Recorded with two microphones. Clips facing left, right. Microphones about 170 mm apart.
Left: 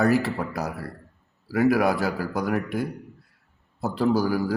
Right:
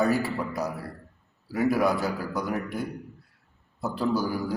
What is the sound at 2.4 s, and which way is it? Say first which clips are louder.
Speech: left 4 dB; 75° left (ahead or behind).